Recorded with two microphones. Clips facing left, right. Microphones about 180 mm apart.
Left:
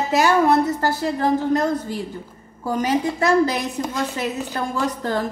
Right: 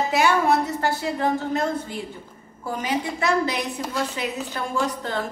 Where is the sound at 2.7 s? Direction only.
40° left (ahead or behind).